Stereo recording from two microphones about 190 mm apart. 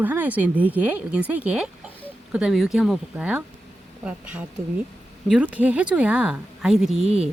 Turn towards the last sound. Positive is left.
turn(degrees=-5)  # may be behind; listen again after turning